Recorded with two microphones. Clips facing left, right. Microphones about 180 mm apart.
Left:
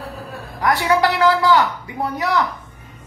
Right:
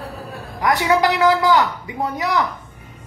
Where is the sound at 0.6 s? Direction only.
20° right (ahead or behind).